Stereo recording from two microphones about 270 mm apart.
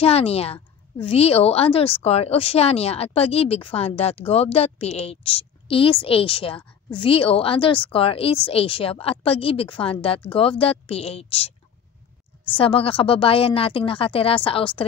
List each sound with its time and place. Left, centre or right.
0.0 s speech: left